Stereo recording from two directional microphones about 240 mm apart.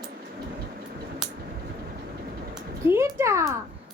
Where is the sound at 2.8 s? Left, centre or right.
Centre.